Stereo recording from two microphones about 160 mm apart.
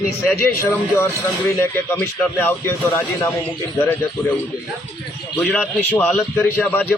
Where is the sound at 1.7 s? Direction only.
10° left (ahead or behind).